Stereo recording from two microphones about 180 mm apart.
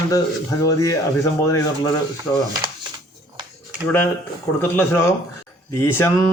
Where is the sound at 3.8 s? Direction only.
15° left (ahead or behind).